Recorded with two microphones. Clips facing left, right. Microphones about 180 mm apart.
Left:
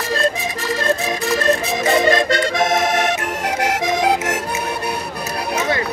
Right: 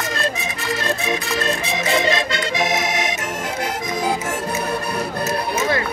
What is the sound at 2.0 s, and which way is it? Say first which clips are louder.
Accordion: left 5 dB; 45° left (ahead or behind).